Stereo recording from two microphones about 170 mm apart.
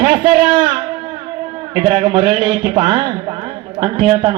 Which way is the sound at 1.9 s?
30° right (ahead or behind).